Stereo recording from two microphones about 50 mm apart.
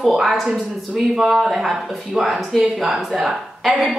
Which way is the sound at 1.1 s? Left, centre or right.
Centre.